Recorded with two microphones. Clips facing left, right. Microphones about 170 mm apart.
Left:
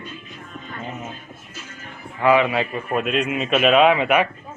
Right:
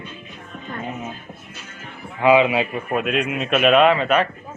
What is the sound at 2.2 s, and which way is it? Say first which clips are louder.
Speech: right 2 dB; 15° right (ahead or behind).